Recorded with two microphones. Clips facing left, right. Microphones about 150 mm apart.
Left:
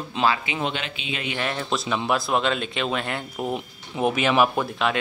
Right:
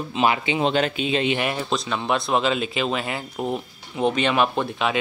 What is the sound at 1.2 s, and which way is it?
Speech, 15° right (ahead or behind).